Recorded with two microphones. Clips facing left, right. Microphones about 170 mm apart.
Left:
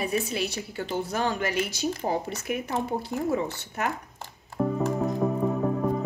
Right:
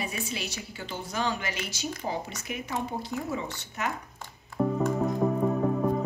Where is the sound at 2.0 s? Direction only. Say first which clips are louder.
Left 4 dB; 35° left (ahead or behind).